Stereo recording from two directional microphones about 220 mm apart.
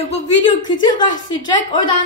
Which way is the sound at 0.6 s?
20° left (ahead or behind).